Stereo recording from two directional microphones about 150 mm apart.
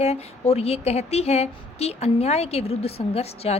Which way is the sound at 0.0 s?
45° left (ahead or behind).